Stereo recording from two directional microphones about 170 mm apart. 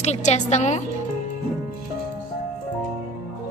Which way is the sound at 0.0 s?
40° left (ahead or behind).